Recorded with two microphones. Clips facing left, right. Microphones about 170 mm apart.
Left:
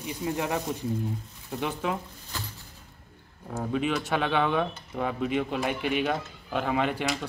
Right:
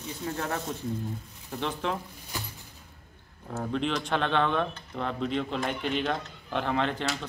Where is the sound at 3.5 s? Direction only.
5° left (ahead or behind).